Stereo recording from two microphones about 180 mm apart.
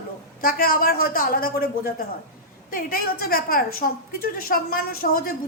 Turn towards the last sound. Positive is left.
turn(degrees=55)  # may be behind; listen again after turning